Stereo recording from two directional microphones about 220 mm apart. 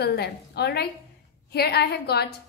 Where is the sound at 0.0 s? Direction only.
45° left (ahead or behind).